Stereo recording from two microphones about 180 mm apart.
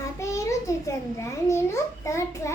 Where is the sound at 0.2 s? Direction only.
15° left (ahead or behind).